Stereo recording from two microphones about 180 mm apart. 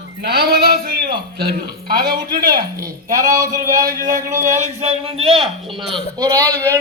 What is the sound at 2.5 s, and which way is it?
A man's voice, 20° right (ahead or behind).